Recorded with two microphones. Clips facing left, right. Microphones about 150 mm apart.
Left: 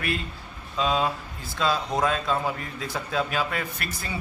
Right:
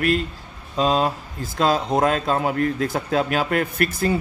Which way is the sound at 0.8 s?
40° right (ahead or behind).